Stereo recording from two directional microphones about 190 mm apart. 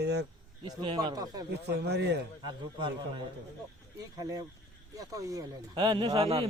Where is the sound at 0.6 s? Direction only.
20° right (ahead or behind).